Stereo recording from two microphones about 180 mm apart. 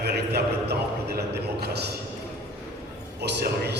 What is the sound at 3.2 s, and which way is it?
Speech, 65° right (ahead or behind).